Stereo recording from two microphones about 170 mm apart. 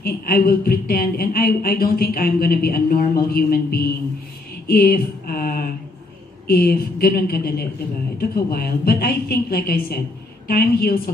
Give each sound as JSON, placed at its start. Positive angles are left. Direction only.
{"t": 0.0, "sound": "speech", "side_deg": 60}